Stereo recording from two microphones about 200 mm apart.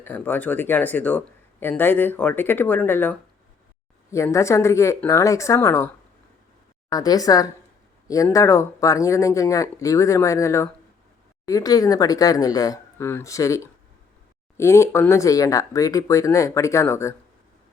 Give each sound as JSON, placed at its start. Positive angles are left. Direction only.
{"t": 0.0, "sound": "speech", "side_deg": 10}
{"t": 6.9, "sound": "a woman's voice", "side_deg": 20}